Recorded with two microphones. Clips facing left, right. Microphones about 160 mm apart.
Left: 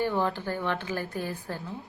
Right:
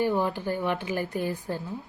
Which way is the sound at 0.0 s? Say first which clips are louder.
Right 2 dB; 15° right (ahead or behind).